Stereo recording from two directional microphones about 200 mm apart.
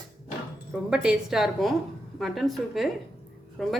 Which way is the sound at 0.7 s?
5° right (ahead or behind).